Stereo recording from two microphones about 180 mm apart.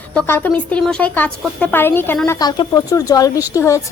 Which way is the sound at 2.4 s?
20° left (ahead or behind).